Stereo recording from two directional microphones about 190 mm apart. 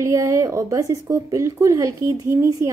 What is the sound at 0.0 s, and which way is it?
A woman's voice, 15° right (ahead or behind).